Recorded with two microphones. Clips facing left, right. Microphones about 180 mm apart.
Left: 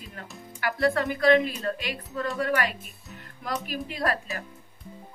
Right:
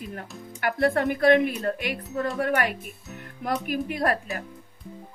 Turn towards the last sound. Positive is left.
turn(degrees=-55)  # may be behind; listen again after turning